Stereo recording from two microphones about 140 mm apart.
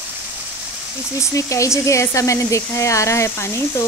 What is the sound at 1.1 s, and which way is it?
Speech, 20° left (ahead or behind).